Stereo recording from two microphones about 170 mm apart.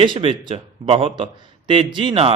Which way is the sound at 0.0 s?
30° right (ahead or behind).